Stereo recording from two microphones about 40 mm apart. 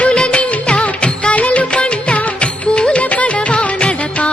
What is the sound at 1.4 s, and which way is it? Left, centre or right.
Music, left.